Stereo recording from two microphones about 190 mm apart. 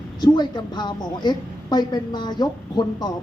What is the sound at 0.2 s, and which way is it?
A woman's voice, 20° left (ahead or behind).